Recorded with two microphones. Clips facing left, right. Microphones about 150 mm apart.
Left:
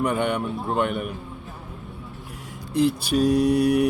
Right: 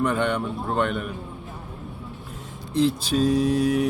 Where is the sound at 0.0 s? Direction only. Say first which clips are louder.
Even; 10° left (ahead or behind).